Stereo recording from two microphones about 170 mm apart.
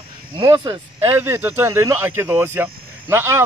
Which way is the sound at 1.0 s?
15° right (ahead or behind).